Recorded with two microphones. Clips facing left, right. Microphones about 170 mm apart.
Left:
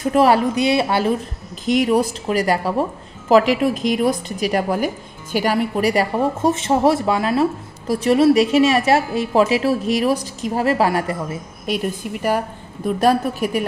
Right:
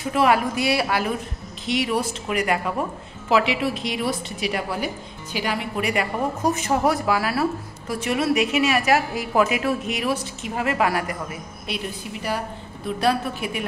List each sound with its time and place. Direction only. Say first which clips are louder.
0.0 s a woman's voice: left 5 dB; 40° left (ahead or behind)
0.6 s a woman's voice: left 5 dB; 20° left (ahead or behind)
1.7 s a woman's voice: left 7 dB; 40° left (ahead or behind); by 7.4 s 25° left (ahead or behind)
7.9 s a woman's voice: left 8 dB; 35° left (ahead or behind)
11.6 s a woman's voice: left 8 dB; 45° left (ahead or behind)